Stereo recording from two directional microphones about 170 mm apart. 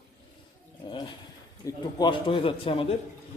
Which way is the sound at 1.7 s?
25° left (ahead or behind).